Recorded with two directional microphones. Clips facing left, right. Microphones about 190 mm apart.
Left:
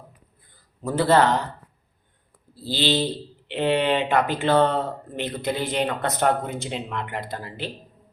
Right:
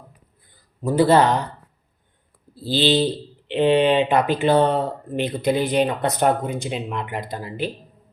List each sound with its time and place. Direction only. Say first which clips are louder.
0.8 s speech: right 3 dB; 15° right (ahead or behind)
2.7 s speech: right 5 dB; 15° right (ahead or behind)